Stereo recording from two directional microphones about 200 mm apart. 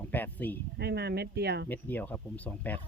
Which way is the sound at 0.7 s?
55° right (ahead or behind).